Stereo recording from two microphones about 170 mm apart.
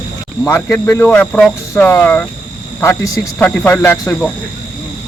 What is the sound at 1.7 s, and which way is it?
Speech, 15° left (ahead or behind).